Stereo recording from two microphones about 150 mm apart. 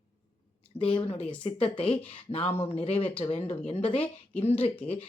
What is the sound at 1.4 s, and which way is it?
Speech, 40° left (ahead or behind).